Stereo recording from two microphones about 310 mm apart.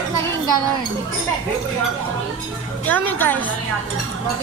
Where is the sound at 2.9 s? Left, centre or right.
Centre.